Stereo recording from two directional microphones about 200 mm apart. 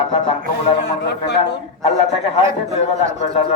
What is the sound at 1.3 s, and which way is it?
Speech, 55° left (ahead or behind).